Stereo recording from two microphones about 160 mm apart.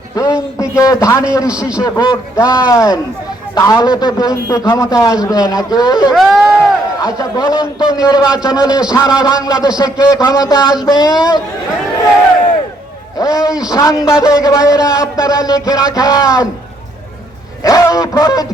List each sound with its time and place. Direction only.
0.8 s a man's voice: 20° left (ahead or behind)
6.1 s speech: centre (ahead or behind)
7.0 s a man's voice: 25° left (ahead or behind)
13.1 s a man's voice: 20° left (ahead or behind)
17.6 s a man's voice: 20° left (ahead or behind)